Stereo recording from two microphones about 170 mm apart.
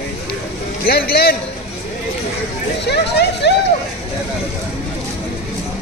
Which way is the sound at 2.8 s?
80° left.